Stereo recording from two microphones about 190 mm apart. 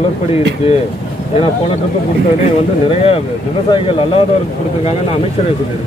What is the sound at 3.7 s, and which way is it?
Speech, 30° left (ahead or behind).